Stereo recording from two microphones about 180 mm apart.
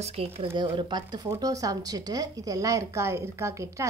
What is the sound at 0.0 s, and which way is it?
Speech, 35° right (ahead or behind).